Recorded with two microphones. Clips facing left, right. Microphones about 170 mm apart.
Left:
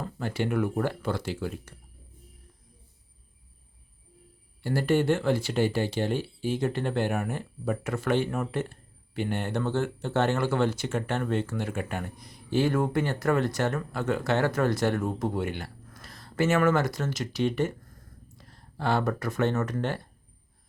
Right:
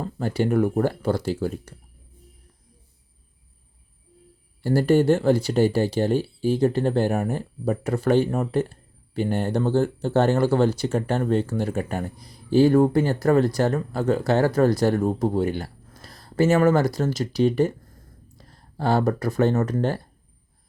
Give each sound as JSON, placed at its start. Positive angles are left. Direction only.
{"t": 0.0, "sound": "speech", "side_deg": -40}
{"t": 4.6, "sound": "speech", "side_deg": -40}